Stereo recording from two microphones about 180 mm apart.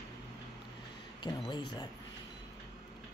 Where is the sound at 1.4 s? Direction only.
25° left (ahead or behind).